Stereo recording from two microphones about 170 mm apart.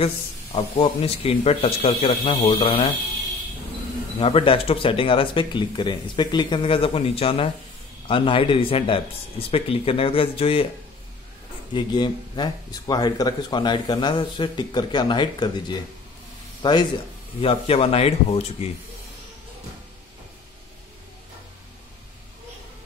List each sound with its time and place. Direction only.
0.0 s speech: 35° left (ahead or behind)
4.2 s speech: 35° left (ahead or behind)
11.7 s speech: 25° left (ahead or behind)